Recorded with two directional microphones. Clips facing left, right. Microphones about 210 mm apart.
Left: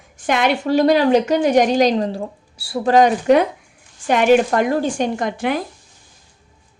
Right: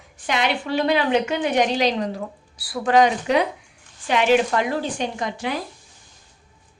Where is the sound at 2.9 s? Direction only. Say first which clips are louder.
Left 5 dB; 45° left (ahead or behind).